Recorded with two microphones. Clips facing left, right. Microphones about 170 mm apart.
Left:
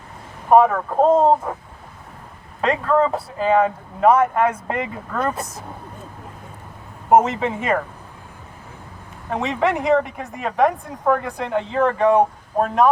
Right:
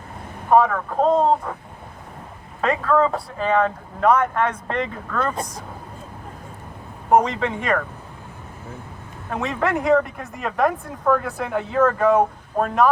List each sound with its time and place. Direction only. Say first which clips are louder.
0.5 s speech: left 3 dB; 10° left (ahead or behind)
2.6 s a man's voice: left 1 dB; centre (ahead or behind)
7.1 s a man's voice: left 2 dB; 5° left (ahead or behind)
9.3 s a man's voice: left 2 dB; centre (ahead or behind)